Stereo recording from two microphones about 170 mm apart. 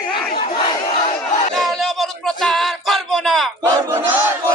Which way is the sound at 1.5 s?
Centre (ahead or behind).